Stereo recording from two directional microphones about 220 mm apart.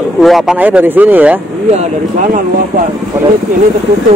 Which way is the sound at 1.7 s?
35° right (ahead or behind).